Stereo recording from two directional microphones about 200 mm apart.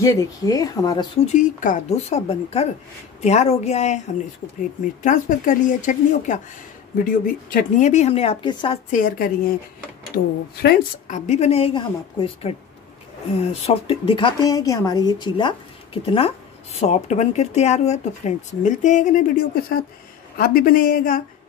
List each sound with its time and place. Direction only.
0.0 s speech: 15° left (ahead or behind); by 4.0 s 35° left (ahead or behind)
5.0 s speech: 40° left (ahead or behind); by 8.7 s 25° left (ahead or behind)
10.1 s speech: 50° left (ahead or behind)